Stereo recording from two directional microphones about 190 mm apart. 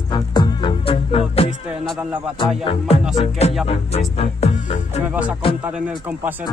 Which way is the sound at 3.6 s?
30° left (ahead or behind).